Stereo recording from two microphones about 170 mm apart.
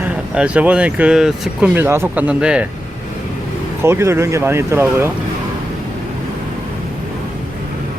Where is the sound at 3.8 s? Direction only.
15° right (ahead or behind).